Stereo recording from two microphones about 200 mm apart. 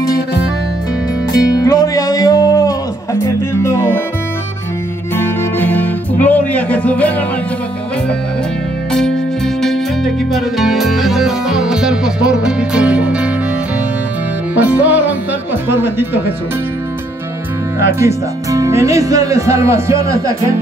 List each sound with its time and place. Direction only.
1.6 s music: 15° left (ahead or behind)
5.1 s music: 10° left (ahead or behind)
10.3 s music: centre (ahead or behind)
14.5 s speech: 5° right (ahead or behind)
17.7 s speech: 15° right (ahead or behind)